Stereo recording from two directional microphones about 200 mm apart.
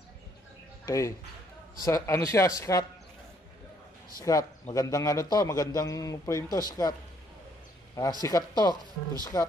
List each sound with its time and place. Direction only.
0.8 s a man's voice: 15° left (ahead or behind)
4.2 s a man's voice: 15° left (ahead or behind)